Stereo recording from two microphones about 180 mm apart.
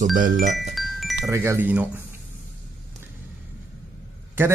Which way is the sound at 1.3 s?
15° right (ahead or behind).